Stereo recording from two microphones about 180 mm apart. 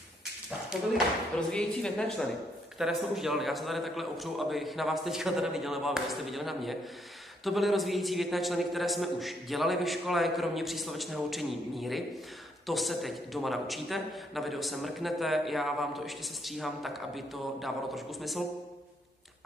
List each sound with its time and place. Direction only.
1.5 s a man's voice: 5° left (ahead or behind)